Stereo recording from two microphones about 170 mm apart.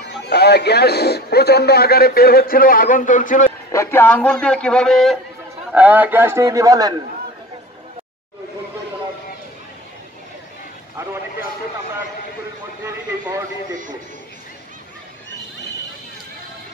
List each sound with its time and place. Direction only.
0.0 s a man's voice: 80° left; by 3.5 s 50° left (ahead or behind)
3.7 s a man's voice: 15° left (ahead or behind)
5.7 s a man's voice: 10° right (ahead or behind)